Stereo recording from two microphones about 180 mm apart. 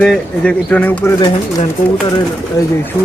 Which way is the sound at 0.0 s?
5° left (ahead or behind).